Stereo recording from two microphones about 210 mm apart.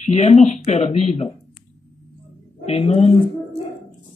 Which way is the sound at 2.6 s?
30° left (ahead or behind).